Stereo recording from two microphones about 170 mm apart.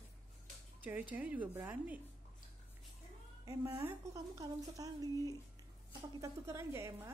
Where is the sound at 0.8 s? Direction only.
10° right (ahead or behind).